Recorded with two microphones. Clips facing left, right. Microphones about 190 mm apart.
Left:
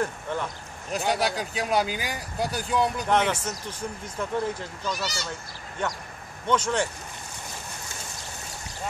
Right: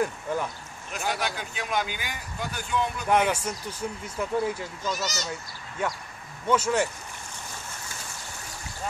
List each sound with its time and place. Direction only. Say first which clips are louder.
0.0 s speech: right 1 dB; 5° right (ahead or behind)
0.9 s speech: left 5 dB; 35° left (ahead or behind)
3.1 s speech: even; 10° right (ahead or behind)
5.0 s speech: right 1 dB; 45° right (ahead or behind)
5.8 s speech: even; 5° right (ahead or behind)